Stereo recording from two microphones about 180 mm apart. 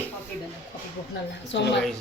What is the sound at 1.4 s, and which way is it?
Speech, 75° left (ahead or behind).